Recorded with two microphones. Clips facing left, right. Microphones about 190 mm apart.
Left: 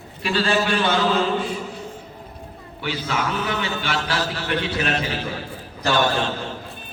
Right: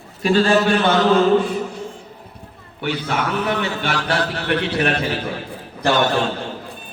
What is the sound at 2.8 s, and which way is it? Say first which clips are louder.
A man's voice: right 3 dB; 60° right (ahead or behind).